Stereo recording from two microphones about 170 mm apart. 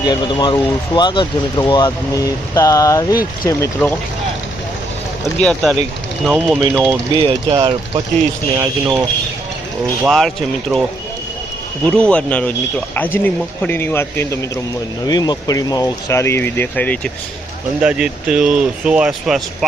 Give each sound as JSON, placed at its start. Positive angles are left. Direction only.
{"t": 0.0, "sound": "speech", "side_deg": 25}
{"t": 5.4, "sound": "speech", "side_deg": 5}
{"t": 6.2, "sound": "speech", "side_deg": -10}
{"t": 7.2, "sound": "speech", "side_deg": -30}
{"t": 10.0, "sound": "speech", "side_deg": 0}
{"t": 11.9, "sound": "speech", "side_deg": 5}
{"t": 17.7, "sound": "speech", "side_deg": -5}